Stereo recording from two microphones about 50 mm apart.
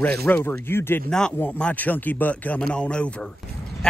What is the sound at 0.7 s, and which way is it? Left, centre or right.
Speech, left.